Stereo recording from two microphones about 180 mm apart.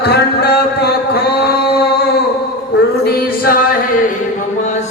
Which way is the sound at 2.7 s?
65° left (ahead or behind).